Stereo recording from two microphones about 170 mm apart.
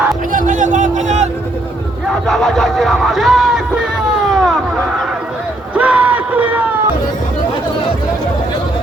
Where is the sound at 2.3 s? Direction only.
Centre (ahead or behind).